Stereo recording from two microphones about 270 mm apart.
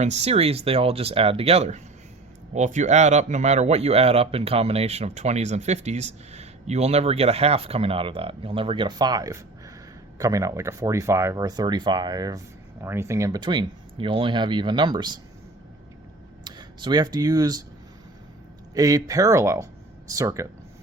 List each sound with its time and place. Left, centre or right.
0.0 s speech: right
16.4 s speech: centre
18.7 s speech: centre